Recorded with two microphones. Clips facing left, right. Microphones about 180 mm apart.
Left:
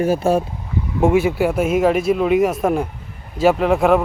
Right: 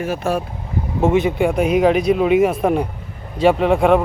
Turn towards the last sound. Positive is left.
turn(degrees=0)  # may be behind; listen again after turning